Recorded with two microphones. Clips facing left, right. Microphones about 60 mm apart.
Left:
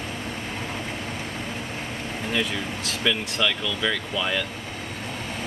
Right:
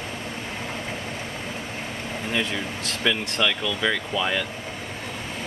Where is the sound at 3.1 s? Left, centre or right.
Centre.